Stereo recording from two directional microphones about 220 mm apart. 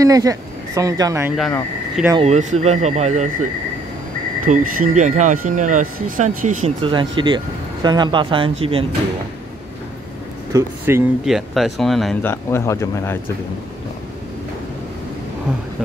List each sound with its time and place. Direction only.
0.0 s speech: 15° right (ahead or behind)
1.3 s speech: centre (ahead or behind)
2.1 s speech: 30° right (ahead or behind)
4.5 s speech: 35° right (ahead or behind)
6.6 s speech: 25° right (ahead or behind)
10.5 s speech: 10° right (ahead or behind)
11.2 s speech: centre (ahead or behind)